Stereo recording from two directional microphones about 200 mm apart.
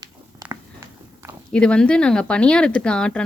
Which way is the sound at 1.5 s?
5° left (ahead or behind).